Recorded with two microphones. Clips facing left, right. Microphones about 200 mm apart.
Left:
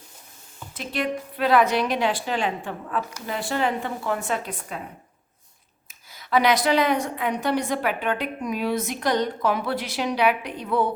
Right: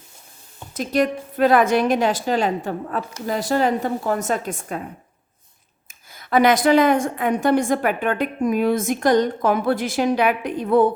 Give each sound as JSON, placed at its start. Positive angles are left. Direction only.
{"t": 0.7, "sound": "a woman's voice", "side_deg": -40}
{"t": 6.1, "sound": "a woman's voice", "side_deg": -50}